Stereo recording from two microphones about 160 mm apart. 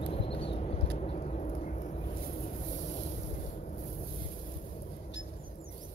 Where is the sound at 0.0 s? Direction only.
35° left (ahead or behind).